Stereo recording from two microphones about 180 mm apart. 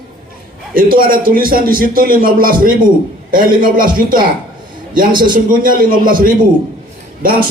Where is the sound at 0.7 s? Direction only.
55° right (ahead or behind).